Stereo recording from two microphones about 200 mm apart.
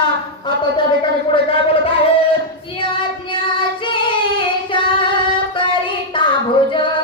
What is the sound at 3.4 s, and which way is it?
Singing, 25° left (ahead or behind).